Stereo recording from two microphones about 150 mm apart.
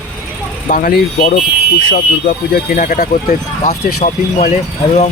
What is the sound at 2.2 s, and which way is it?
Speech, 60° left (ahead or behind).